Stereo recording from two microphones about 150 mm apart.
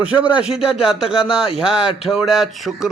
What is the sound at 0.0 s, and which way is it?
Speech, 10° right (ahead or behind).